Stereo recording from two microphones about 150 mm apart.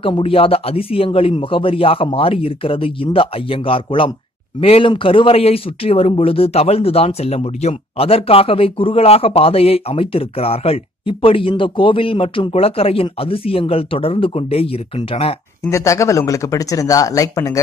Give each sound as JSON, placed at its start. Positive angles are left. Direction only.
{"t": 0.0, "sound": "speech", "side_deg": 40}
{"t": 15.7, "sound": "speech", "side_deg": 20}